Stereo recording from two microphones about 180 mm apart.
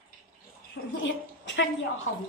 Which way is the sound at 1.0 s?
85° left.